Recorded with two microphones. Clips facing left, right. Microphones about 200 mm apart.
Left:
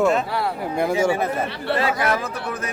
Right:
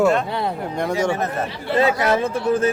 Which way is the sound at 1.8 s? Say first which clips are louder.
Right 6 dB; 25° right (ahead or behind).